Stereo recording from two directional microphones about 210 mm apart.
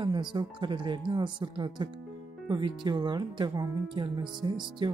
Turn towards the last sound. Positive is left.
turn(degrees=-20)  # may be behind; listen again after turning